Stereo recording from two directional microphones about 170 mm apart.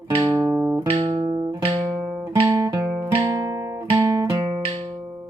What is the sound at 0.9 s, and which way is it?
Music, 30° right (ahead or behind).